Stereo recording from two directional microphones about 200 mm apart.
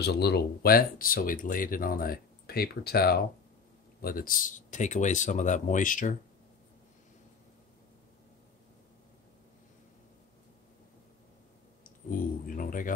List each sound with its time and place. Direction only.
0.0 s speech: 55° left (ahead or behind)
11.8 s speech: 45° left (ahead or behind)